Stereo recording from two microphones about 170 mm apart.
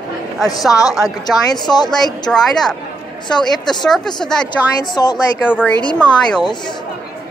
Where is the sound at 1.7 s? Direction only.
25° left (ahead or behind).